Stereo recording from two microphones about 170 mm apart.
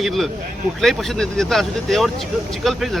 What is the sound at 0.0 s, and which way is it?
Speech, centre (ahead or behind).